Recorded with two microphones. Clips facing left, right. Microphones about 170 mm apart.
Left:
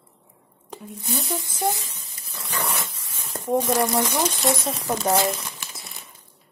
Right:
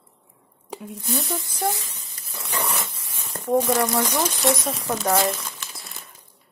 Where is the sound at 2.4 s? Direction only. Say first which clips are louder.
Right 1 dB; 25° right (ahead or behind).